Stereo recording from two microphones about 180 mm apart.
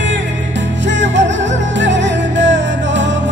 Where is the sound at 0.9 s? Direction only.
85° right.